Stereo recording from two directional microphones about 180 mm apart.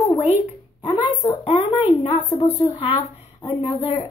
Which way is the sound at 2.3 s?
35° left (ahead or behind).